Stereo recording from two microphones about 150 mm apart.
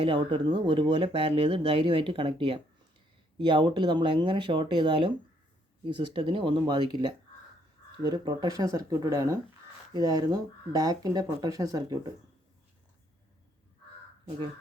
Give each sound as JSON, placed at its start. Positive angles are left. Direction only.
{"t": 0.0, "sound": "speech", "side_deg": -35}